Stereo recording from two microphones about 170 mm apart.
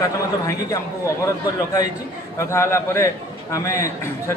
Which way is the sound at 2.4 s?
15° left (ahead or behind).